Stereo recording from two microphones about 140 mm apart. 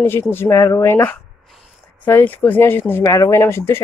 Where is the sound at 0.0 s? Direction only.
15° left (ahead or behind).